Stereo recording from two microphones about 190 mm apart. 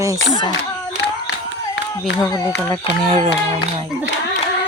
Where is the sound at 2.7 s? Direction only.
30° right (ahead or behind).